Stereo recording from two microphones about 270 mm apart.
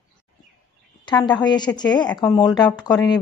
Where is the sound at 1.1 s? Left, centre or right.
Centre.